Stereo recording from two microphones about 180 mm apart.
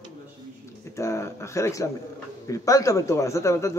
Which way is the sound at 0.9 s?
15° left (ahead or behind).